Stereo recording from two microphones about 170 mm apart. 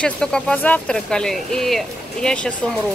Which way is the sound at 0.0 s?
5° left (ahead or behind).